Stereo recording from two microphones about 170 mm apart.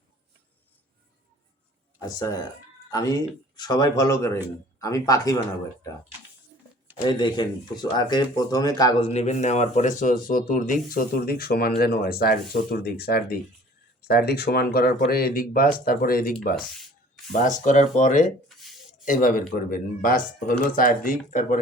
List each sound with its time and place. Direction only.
2.0 s speech: 20° left (ahead or behind)
7.0 s speech: 25° left (ahead or behind)
9.1 s speech: 40° left (ahead or behind); by 16.3 s 60° left (ahead or behind)
17.3 s speech: 50° left (ahead or behind)
18.4 s a sound: centre (ahead or behind)
19.0 s speech: 50° left (ahead or behind)